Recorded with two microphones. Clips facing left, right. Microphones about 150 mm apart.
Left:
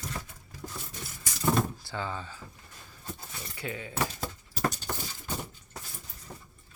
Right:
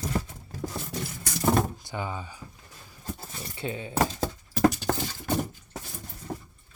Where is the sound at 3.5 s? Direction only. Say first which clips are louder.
Right 4 dB; 25° right (ahead or behind).